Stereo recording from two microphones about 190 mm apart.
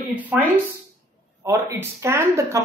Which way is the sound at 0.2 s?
10° right (ahead or behind).